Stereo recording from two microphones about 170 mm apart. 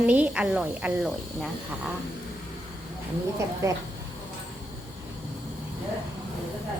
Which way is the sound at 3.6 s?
20° right (ahead or behind).